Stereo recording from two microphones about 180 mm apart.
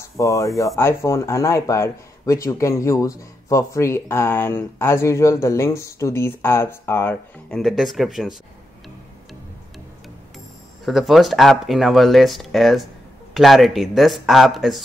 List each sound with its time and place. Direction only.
0.2 s speech: 20° left (ahead or behind); by 8.4 s centre (ahead or behind)
10.9 s speech: centre (ahead or behind)